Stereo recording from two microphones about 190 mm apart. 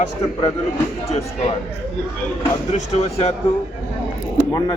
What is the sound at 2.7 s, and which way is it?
Speech, 35° left (ahead or behind).